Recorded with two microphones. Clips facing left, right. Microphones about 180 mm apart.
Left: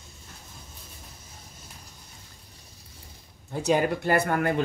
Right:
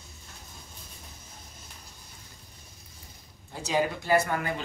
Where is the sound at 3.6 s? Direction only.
55° left (ahead or behind).